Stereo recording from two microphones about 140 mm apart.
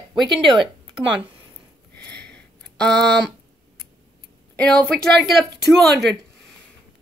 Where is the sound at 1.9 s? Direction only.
10° left (ahead or behind).